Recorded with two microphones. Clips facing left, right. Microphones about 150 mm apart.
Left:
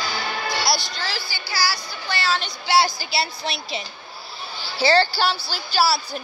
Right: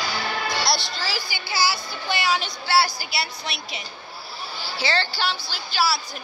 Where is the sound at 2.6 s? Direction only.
15° left (ahead or behind).